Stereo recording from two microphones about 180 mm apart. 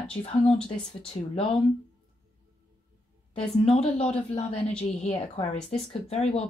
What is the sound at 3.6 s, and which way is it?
Speech, 35° left (ahead or behind).